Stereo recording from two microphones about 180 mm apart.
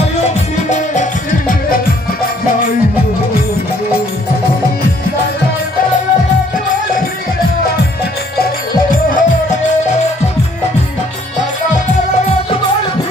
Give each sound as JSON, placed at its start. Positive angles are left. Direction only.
{"t": 0.7, "sound": "music", "side_deg": 40}
{"t": 8.9, "sound": "music", "side_deg": 50}